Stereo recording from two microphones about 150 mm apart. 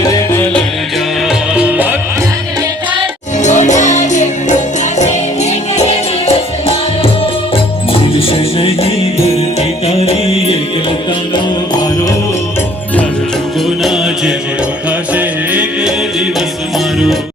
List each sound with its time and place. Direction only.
0.0 s music: 25° left (ahead or behind)
1.5 s music: 10° right (ahead or behind)
3.4 s music: 50° left (ahead or behind)
8.3 s music: 40° left (ahead or behind)
13.8 s mantra: centre (ahead or behind)
15.1 s music: 10° right (ahead or behind)